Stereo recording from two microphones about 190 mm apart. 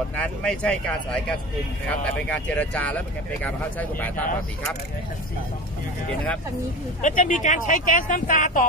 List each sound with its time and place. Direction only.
0.2 s speech: 5° left (ahead or behind)
7.0 s speech: 40° left (ahead or behind)